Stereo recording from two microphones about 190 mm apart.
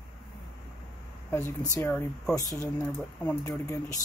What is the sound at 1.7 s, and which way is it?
Speech, 10° left (ahead or behind).